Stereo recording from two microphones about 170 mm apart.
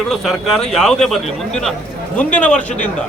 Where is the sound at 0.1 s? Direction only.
Centre (ahead or behind).